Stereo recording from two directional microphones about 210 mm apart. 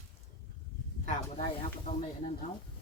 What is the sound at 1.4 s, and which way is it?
Speech, 25° left (ahead or behind).